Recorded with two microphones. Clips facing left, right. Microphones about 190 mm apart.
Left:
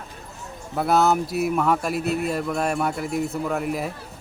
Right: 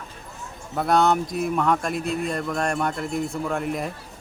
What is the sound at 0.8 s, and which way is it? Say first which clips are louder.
Speech: even; 5° left (ahead or behind).